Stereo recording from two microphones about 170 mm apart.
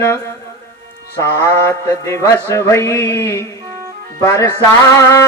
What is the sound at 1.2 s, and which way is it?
Music, 15° left (ahead or behind).